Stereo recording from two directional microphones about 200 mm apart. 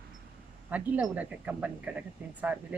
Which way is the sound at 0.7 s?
5° right (ahead or behind).